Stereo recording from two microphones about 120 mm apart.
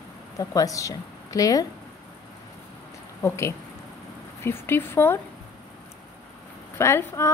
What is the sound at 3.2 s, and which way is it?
Speech, 25° left (ahead or behind).